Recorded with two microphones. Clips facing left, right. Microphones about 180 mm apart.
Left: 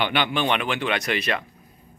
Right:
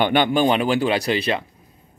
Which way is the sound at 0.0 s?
45° right (ahead or behind).